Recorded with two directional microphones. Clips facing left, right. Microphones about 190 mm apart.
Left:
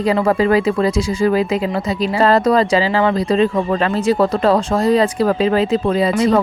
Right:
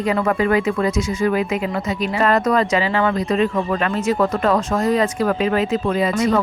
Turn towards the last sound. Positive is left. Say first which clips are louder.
# left 3 dB
turn(degrees=30)  # may be behind; listen again after turning